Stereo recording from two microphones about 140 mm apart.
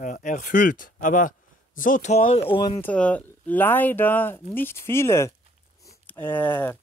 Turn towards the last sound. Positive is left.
turn(degrees=15)  # may be behind; listen again after turning